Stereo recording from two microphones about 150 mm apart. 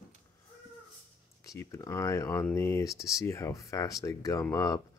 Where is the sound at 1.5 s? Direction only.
20° left (ahead or behind).